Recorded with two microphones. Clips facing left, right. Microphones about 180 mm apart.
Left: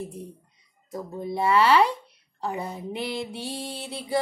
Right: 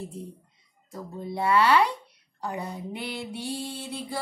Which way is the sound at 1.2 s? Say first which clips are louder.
Left 1 dB; 20° left (ahead or behind).